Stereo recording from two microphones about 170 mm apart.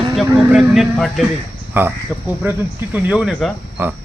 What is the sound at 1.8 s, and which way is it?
Speech, 10° right (ahead or behind).